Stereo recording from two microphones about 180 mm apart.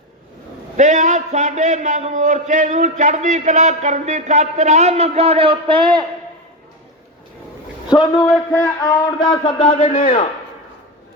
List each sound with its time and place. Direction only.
0.8 s a man's voice: 40° right (ahead or behind); by 6.1 s 25° right (ahead or behind)
7.9 s speech: 25° left (ahead or behind)
8.2 s speech: 5° left (ahead or behind)
8.8 s speech: 20° left (ahead or behind)